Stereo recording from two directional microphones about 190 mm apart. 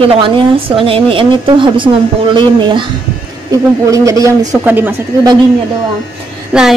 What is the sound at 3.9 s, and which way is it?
Speech, 15° right (ahead or behind).